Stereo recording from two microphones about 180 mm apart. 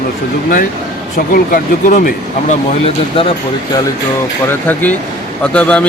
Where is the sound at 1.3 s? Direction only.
50° left (ahead or behind).